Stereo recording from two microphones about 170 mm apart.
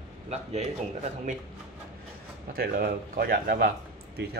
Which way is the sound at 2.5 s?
65° right (ahead or behind).